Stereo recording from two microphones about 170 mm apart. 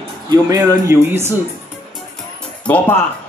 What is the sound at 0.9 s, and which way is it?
Speech, 15° right (ahead or behind).